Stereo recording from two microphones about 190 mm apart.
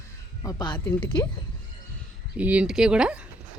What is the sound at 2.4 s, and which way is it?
Speech, 5° right (ahead or behind).